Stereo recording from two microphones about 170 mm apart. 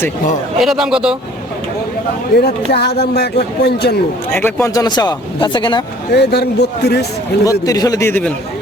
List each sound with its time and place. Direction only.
0.6 s speech: centre (ahead or behind)
2.4 s speech: 70° left (ahead or behind)
4.3 s speech: 15° left (ahead or behind)
6.1 s speech: 75° left (ahead or behind)
7.6 s speech: 20° left (ahead or behind)